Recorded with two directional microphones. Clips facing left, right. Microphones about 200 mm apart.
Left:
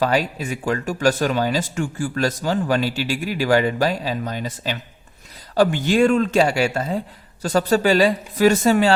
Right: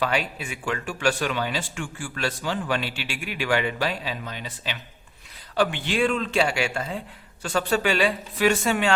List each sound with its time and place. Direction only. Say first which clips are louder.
0.0 s speech: left 6 dB; 40° left (ahead or behind)